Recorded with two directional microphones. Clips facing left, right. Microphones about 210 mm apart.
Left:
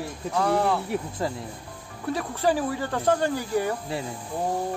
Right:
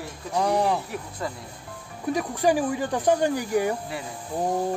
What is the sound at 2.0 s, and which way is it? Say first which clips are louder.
Speech: right 2 dB; 15° right (ahead or behind).